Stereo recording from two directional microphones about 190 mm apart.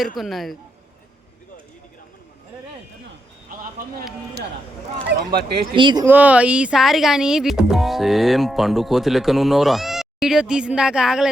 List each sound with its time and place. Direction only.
0.0 s speech: centre (ahead or behind)
3.5 s a man's voice: 45° right (ahead or behind)
5.0 s speech: 55° right (ahead or behind)
5.7 s speech: 25° right (ahead or behind)
6.1 s speech: 10° right (ahead or behind)